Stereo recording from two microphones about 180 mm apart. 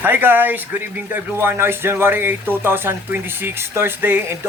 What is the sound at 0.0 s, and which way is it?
Speech, 10° right (ahead or behind).